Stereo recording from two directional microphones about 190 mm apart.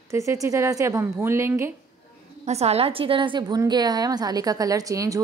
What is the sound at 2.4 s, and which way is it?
A woman's voice, 35° right (ahead or behind).